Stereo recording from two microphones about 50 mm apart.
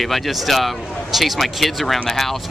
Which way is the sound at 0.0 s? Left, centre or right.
Centre.